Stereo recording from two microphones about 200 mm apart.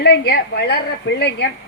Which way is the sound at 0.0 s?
55° left (ahead or behind).